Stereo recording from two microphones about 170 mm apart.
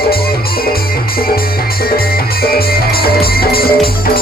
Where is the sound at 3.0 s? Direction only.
65° left (ahead or behind).